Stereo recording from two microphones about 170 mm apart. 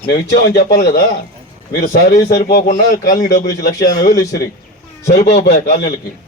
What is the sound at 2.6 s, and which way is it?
Speech, 50° left (ahead or behind).